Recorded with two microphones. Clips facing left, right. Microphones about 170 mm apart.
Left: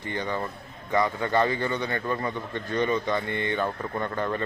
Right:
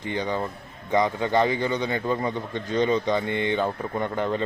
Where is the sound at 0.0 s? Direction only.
15° right (ahead or behind).